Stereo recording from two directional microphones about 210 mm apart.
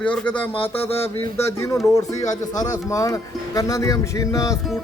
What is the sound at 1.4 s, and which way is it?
Speech, 15° left (ahead or behind).